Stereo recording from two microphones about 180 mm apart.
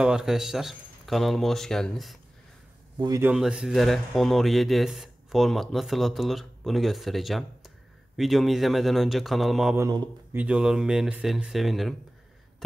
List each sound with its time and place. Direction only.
0.0 s speech: 5° right (ahead or behind)
3.2 s speech: 5° right (ahead or behind)
9.8 s speech: 20° right (ahead or behind)
10.3 s speech: 5° right (ahead or behind)